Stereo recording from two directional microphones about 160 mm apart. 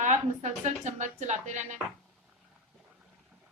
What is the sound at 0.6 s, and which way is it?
Speech, 50° right (ahead or behind).